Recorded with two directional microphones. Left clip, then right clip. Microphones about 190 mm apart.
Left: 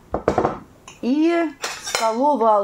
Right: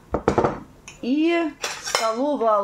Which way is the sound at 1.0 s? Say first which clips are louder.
Left 2 dB; 20° left (ahead or behind).